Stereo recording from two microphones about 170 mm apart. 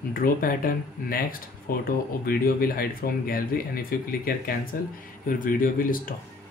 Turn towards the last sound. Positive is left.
turn(degrees=55)  # may be behind; listen again after turning